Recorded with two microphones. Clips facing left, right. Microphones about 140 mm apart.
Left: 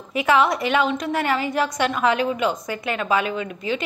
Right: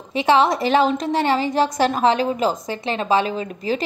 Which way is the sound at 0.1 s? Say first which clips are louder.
Right 2 dB; 30° right (ahead or behind).